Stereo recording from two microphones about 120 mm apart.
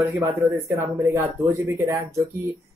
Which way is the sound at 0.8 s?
15° right (ahead or behind).